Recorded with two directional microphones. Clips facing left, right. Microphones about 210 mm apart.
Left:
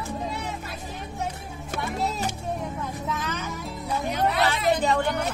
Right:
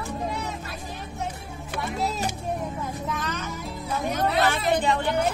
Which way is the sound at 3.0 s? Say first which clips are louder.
Even; 5° left (ahead or behind).